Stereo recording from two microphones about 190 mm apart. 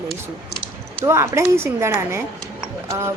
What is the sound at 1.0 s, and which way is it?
Speech, 15° right (ahead or behind).